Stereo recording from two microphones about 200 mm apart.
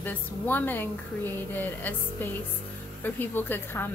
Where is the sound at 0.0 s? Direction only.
10° left (ahead or behind).